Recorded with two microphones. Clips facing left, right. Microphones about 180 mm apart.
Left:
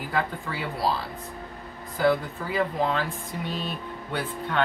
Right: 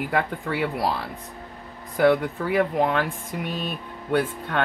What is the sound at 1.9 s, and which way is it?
Speech, 65° right (ahead or behind).